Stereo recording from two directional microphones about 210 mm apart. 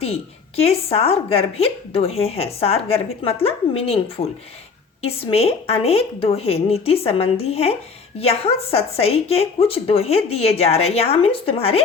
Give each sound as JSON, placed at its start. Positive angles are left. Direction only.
{"t": 0.0, "sound": "a woman's voice", "side_deg": 30}
{"t": 5.0, "sound": "a woman's voice", "side_deg": 30}